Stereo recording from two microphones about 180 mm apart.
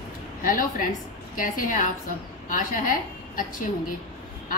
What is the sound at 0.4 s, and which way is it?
A woman's voice, 50° left (ahead or behind).